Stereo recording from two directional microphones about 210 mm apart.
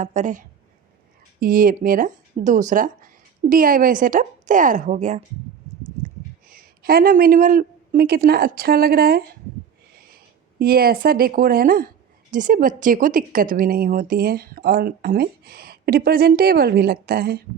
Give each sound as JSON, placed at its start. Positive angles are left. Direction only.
{"t": 0.0, "sound": "a woman's voice", "side_deg": -35}
{"t": 6.5, "sound": "a woman's voice", "side_deg": -45}